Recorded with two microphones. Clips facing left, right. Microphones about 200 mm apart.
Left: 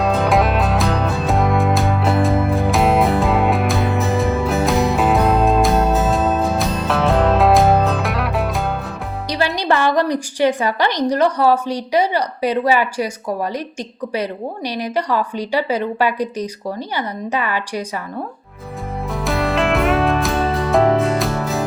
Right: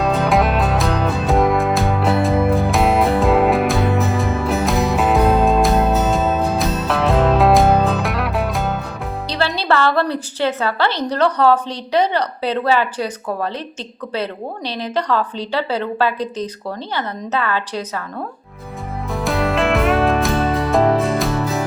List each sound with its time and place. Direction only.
0.0 s music: centre (ahead or behind)
9.6 s a sound: 15° left (ahead or behind)
11.1 s a woman's voice: 10° left (ahead or behind)
19.1 s music: centre (ahead or behind)